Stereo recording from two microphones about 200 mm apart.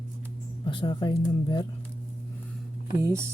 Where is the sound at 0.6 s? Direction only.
25° left (ahead or behind).